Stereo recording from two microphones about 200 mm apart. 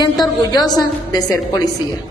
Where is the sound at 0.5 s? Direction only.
20° left (ahead or behind).